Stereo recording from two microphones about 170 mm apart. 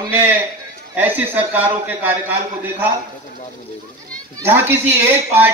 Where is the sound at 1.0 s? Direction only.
10° right (ahead or behind).